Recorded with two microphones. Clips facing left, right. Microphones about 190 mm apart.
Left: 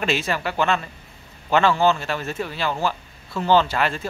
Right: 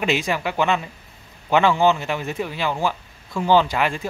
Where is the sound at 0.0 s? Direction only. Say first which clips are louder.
Right 2 dB; 15° right (ahead or behind).